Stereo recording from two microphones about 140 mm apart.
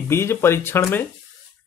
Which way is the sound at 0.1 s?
15° left (ahead or behind).